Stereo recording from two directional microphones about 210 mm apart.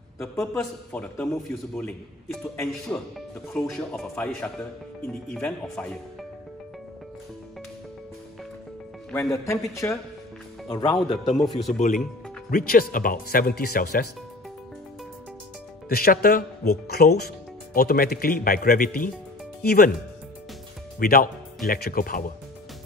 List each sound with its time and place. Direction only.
0.2 s a man's voice: centre (ahead or behind)
9.1 s speech: 10° left (ahead or behind)
11.2 s a man's voice: centre (ahead or behind)
12.4 s speech: 40° left (ahead or behind)
15.9 s speech: 45° left (ahead or behind)
21.0 s speech: 45° left (ahead or behind)